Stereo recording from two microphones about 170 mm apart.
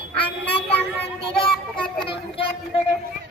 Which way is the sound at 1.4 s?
30° left (ahead or behind).